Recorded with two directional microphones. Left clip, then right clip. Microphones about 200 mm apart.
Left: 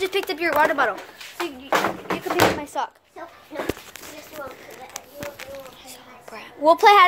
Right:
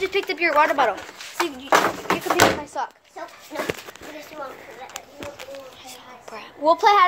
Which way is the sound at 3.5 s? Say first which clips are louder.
Right 2 dB; 55° right (ahead or behind).